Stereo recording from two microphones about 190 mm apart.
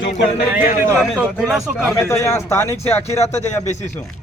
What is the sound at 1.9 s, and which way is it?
Speech, 15° left (ahead or behind).